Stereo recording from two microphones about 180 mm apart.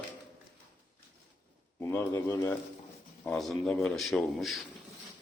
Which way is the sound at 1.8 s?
15° left (ahead or behind).